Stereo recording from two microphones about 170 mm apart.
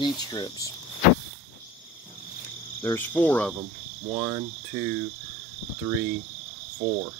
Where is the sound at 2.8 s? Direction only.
10° left (ahead or behind).